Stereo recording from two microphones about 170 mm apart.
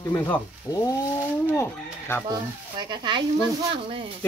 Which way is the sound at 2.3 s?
25° right (ahead or behind).